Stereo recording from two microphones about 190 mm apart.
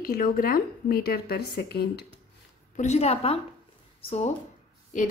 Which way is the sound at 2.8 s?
35° left (ahead or behind).